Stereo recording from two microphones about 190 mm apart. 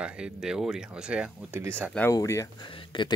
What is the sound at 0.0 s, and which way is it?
Speech, 5° right (ahead or behind).